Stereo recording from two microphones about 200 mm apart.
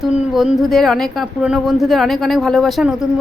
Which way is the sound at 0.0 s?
Centre (ahead or behind).